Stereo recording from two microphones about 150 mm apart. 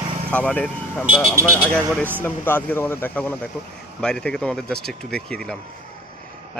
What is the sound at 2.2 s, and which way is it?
Speech, 15° left (ahead or behind).